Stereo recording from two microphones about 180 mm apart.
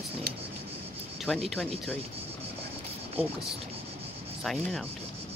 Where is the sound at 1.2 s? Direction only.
Centre (ahead or behind).